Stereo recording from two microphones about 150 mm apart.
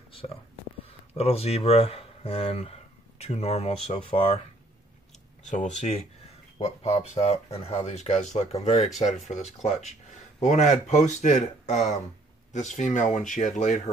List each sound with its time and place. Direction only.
1.1 s speech: 40° left (ahead or behind)
5.5 s speech: 55° left (ahead or behind)
6.6 s speech: 45° left (ahead or behind)